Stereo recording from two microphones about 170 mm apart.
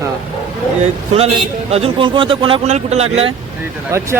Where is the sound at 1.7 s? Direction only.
35° right (ahead or behind).